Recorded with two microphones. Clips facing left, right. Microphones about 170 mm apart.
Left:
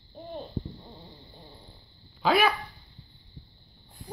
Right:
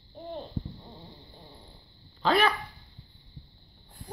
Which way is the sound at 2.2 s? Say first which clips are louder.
Left 1 dB; 10° left (ahead or behind).